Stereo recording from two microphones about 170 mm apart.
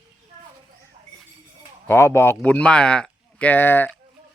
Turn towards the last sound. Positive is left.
turn(degrees=10)  # may be behind; listen again after turning